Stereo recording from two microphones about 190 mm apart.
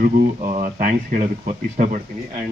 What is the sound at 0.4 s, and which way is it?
Speech, 40° right (ahead or behind).